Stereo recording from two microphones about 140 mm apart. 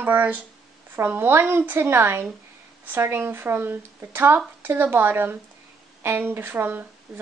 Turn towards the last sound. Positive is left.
turn(degrees=0)  # may be behind; listen again after turning